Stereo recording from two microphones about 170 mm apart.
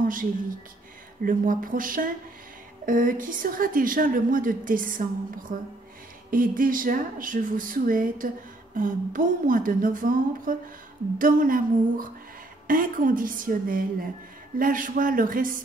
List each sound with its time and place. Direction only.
0.0 s a woman's voice: 55° right (ahead or behind)